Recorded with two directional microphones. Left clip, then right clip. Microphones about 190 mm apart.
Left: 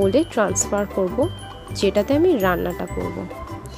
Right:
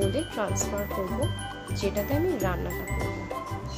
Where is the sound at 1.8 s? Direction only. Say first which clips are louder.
Left 10 dB; 45° left (ahead or behind).